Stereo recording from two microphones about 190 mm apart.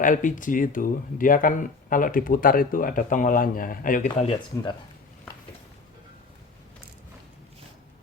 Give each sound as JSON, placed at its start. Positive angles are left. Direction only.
{"t": 0.0, "sound": "speech", "side_deg": 45}